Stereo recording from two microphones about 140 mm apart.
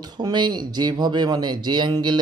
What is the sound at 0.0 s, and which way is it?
Speech, 30° right (ahead or behind).